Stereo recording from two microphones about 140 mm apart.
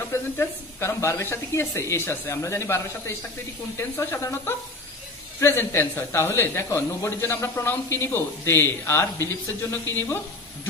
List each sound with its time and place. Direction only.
0.1 s a man's voice: 20° left (ahead or behind)